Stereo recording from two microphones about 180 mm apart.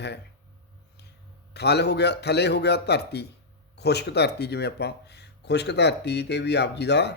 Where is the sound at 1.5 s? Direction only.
70° left (ahead or behind).